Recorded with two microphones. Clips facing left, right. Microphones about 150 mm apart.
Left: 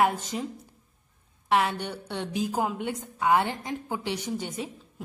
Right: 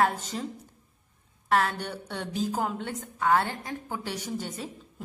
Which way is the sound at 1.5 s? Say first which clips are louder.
Left 1 dB; 5° left (ahead or behind).